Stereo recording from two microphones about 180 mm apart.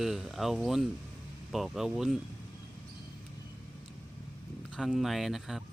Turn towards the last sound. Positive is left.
turn(degrees=0)  # may be behind; listen again after turning